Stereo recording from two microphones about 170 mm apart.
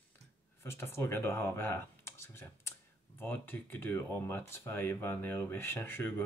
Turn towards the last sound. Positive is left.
turn(degrees=10)  # may be behind; listen again after turning